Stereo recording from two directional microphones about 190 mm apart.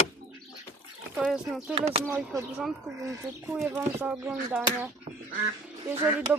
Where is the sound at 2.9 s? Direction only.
15° right (ahead or behind).